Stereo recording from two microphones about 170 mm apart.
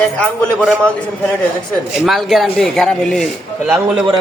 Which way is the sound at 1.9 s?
Centre (ahead or behind).